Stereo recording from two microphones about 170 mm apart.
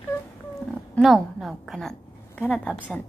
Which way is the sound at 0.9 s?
Centre (ahead or behind).